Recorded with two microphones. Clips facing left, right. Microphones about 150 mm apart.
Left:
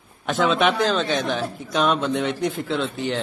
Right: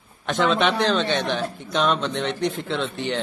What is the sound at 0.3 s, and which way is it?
A man's voice, centre (ahead or behind).